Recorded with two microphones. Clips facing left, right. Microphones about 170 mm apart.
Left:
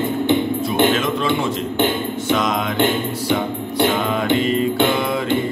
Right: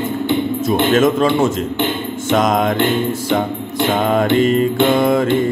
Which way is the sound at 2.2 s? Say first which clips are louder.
Right 7 dB; 45° right (ahead or behind).